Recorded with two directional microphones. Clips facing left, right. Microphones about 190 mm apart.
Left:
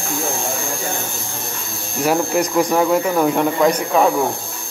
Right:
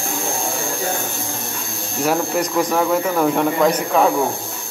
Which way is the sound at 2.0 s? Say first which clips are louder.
Left 2 dB; centre (ahead or behind).